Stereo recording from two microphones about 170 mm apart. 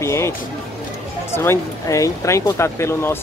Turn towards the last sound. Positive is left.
turn(degrees=15)  # may be behind; listen again after turning